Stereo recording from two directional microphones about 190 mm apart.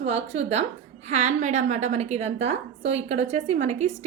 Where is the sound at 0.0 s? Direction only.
35° right (ahead or behind).